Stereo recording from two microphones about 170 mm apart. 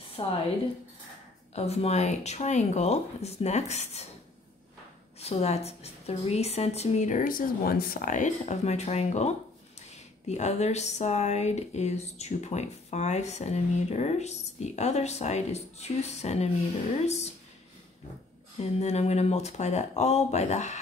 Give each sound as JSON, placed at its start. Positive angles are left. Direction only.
{"t": 0.2, "sound": "speech", "side_deg": 30}
{"t": 1.5, "sound": "speech", "side_deg": 40}
{"t": 5.2, "sound": "speech", "side_deg": 40}
{"t": 18.6, "sound": "speech", "side_deg": 40}